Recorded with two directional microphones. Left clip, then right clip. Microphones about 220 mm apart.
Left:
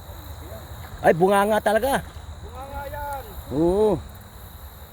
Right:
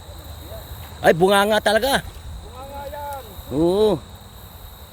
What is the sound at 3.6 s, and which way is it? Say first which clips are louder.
Speech: right 2 dB; 5° right (ahead or behind).